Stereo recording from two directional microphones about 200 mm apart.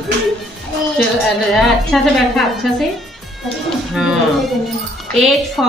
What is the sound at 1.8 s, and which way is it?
Speech, centre (ahead or behind).